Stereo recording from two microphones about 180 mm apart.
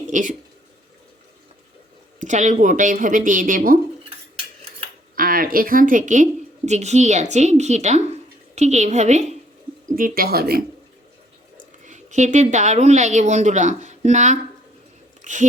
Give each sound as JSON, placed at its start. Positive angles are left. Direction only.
{"t": 0.1, "sound": "speech", "side_deg": -45}
{"t": 2.2, "sound": "speech", "side_deg": -40}
{"t": 5.1, "sound": "a woman's voice", "side_deg": -50}
{"t": 9.9, "sound": "speech", "side_deg": -55}
{"t": 11.9, "sound": "a woman's voice", "side_deg": -40}
{"t": 15.2, "sound": "chewing", "side_deg": -45}